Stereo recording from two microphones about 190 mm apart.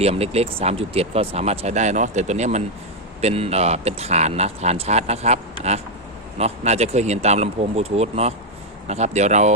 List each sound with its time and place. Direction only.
0.0 s speech: 30° right (ahead or behind)